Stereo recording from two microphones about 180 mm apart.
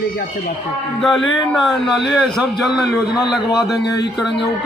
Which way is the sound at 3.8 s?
65° left (ahead or behind).